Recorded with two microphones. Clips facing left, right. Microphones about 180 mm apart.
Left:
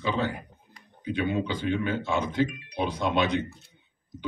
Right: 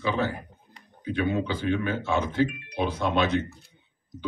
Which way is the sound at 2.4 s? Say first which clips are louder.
Right 3 dB; 55° right (ahead or behind).